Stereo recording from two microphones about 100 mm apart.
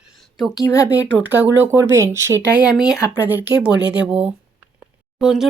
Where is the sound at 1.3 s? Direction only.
20° right (ahead or behind).